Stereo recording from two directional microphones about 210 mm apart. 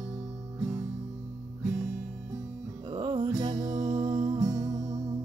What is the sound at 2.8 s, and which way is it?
Music, 25° right (ahead or behind).